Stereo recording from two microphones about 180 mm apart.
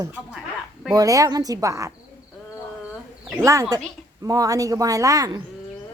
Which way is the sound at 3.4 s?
15° right (ahead or behind).